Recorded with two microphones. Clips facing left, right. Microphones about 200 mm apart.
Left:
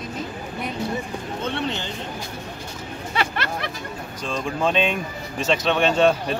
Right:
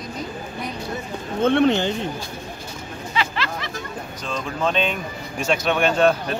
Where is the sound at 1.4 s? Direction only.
55° right (ahead or behind).